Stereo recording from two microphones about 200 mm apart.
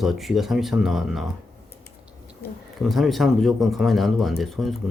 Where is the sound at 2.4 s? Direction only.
50° left (ahead or behind).